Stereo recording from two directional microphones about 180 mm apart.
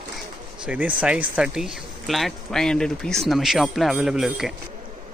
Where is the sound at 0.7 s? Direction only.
10° right (ahead or behind).